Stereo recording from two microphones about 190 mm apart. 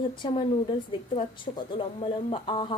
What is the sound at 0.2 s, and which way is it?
Speech, 25° left (ahead or behind).